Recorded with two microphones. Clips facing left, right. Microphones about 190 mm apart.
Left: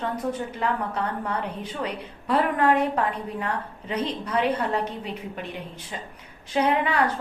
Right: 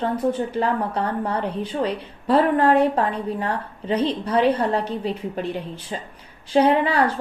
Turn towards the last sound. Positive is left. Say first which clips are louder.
# right 5 dB
turn(degrees=-35)  # may be behind; listen again after turning